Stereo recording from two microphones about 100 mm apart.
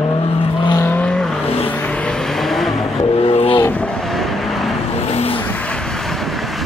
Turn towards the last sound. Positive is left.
turn(degrees=85)